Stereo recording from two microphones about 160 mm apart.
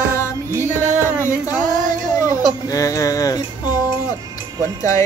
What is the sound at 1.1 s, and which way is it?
Music, 15° left (ahead or behind).